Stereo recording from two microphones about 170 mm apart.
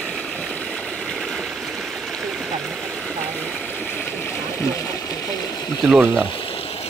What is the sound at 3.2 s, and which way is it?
Stream, 5° left (ahead or behind).